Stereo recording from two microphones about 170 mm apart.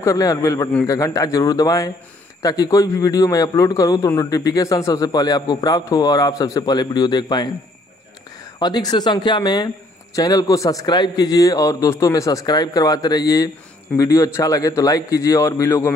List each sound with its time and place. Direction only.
0.0 s a man's voice: 20° left (ahead or behind)
8.5 s a man's voice: 25° left (ahead or behind)